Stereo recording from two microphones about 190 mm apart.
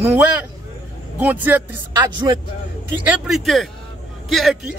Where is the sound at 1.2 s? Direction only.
10° right (ahead or behind).